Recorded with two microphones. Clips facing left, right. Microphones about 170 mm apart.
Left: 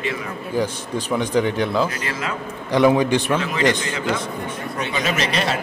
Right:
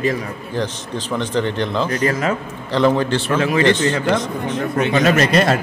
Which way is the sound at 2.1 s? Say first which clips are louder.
Right 7 dB; 45° right (ahead or behind).